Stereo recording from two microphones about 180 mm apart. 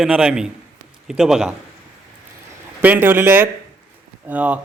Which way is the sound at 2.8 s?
10° right (ahead or behind).